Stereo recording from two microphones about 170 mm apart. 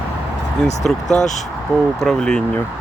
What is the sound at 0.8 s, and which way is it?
Speech, 5° left (ahead or behind).